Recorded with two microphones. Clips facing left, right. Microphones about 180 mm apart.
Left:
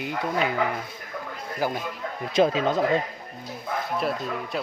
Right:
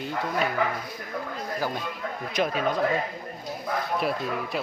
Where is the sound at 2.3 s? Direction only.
25° left (ahead or behind).